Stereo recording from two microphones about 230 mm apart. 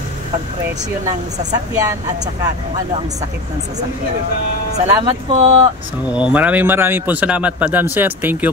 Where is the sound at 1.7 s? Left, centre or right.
Centre.